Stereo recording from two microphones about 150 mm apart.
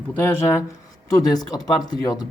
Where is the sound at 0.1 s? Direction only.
15° left (ahead or behind).